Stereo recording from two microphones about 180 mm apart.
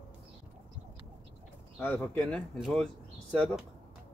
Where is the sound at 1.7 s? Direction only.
10° left (ahead or behind).